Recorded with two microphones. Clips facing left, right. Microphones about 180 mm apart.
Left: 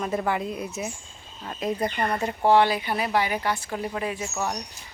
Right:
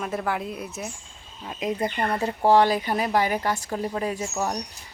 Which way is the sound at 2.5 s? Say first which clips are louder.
Right 1 dB; 40° right (ahead or behind).